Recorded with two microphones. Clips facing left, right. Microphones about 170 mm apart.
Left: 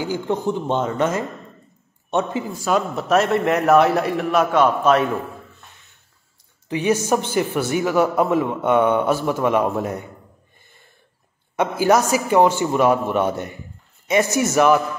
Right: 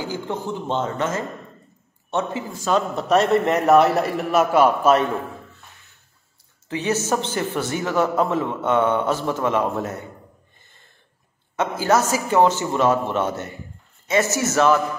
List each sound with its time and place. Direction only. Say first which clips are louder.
0.0 s a woman's voice: left 5 dB; 15° left (ahead or behind); by 5.0 s 5° right (ahead or behind)
6.7 s a woman's voice: left 3 dB; 15° left (ahead or behind)
11.5 s a woman's voice: left 3 dB; 15° left (ahead or behind)